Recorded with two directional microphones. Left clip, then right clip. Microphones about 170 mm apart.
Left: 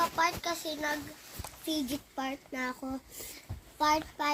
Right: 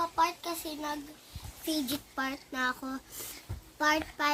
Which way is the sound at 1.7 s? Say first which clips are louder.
Right 1 dB; 10° right (ahead or behind).